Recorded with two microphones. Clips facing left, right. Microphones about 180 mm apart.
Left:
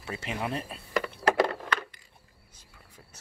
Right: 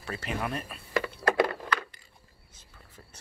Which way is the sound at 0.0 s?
20° left (ahead or behind).